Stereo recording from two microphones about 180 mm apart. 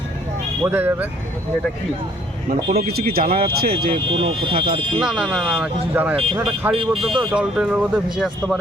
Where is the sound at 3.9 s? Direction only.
30° right (ahead or behind).